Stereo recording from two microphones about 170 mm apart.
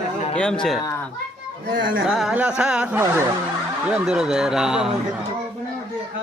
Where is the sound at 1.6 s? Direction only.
55° right (ahead or behind).